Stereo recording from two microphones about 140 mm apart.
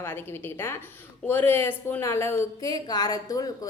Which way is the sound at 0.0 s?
15° left (ahead or behind).